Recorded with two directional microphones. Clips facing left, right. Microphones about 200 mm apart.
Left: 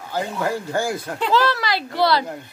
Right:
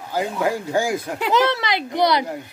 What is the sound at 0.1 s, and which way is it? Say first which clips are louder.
Speech: right 2 dB; 10° right (ahead or behind).